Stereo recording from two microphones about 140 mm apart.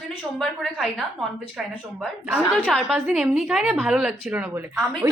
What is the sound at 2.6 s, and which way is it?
A woman's voice, 5° right (ahead or behind).